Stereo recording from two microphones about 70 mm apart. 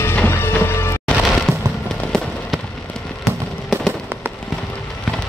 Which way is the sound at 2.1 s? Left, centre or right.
Centre.